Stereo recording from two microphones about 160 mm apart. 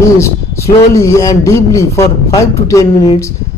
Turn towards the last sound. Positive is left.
turn(degrees=20)  # may be behind; listen again after turning